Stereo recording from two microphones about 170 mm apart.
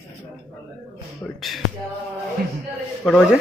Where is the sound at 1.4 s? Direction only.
Centre (ahead or behind).